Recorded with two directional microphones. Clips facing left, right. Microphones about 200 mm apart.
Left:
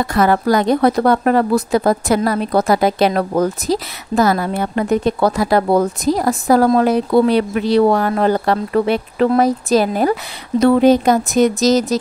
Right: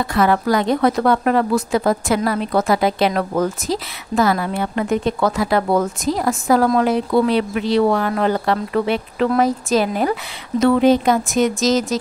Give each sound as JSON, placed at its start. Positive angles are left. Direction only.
{"t": 0.0, "sound": "speech", "side_deg": 40}